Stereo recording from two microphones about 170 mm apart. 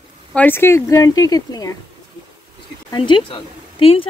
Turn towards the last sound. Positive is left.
turn(degrees=35)  # may be behind; listen again after turning